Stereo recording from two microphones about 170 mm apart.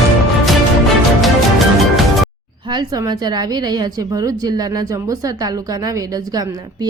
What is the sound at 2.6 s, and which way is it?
A woman's voice, 25° right (ahead or behind).